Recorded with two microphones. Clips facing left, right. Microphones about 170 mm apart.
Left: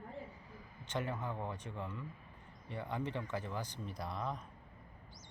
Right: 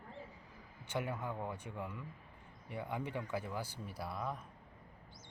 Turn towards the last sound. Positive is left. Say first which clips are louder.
# left 1 dB
turn(degrees=-5)  # may be behind; listen again after turning